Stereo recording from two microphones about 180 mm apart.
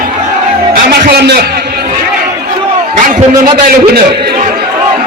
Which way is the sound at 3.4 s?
60° right (ahead or behind).